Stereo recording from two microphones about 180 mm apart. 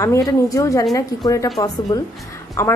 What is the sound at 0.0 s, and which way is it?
Speech, 15° left (ahead or behind).